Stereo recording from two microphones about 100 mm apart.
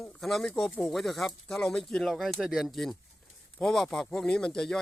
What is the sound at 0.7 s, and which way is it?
Speech, 15° left (ahead or behind).